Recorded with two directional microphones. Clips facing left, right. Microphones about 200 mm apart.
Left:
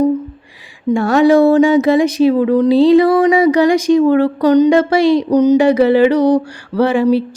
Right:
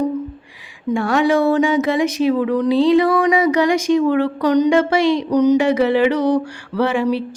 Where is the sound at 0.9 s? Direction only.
35° left (ahead or behind).